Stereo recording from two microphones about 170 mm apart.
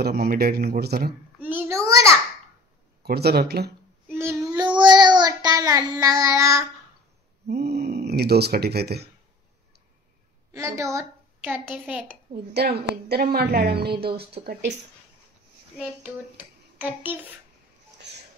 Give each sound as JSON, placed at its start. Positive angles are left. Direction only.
{"t": 0.0, "sound": "a man's voice", "side_deg": -65}
{"t": 1.4, "sound": "a sound", "side_deg": -10}
{"t": 3.0, "sound": "a woman's voice", "side_deg": -70}
{"t": 4.1, "sound": "child singing", "side_deg": -15}
{"t": 7.4, "sound": "speech", "side_deg": -70}
{"t": 10.5, "sound": "a woman's voice", "side_deg": -15}
{"t": 12.5, "sound": "a woman's voice", "side_deg": -70}
{"t": 15.7, "sound": "a child's voice", "side_deg": -5}
{"t": 18.1, "sound": "a sound", "side_deg": -90}